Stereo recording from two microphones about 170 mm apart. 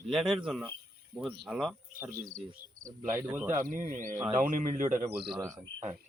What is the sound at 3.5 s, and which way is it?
Speech, 55° right (ahead or behind).